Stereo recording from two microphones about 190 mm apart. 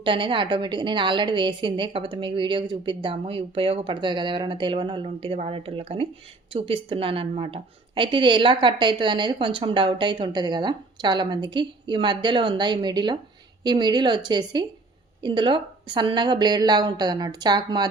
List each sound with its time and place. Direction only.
0.0 s a woman's voice: 25° right (ahead or behind)